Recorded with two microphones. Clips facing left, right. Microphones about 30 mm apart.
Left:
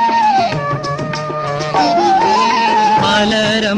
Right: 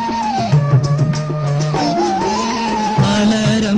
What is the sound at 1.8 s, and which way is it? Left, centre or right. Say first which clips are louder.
Music: left 6 dB; left.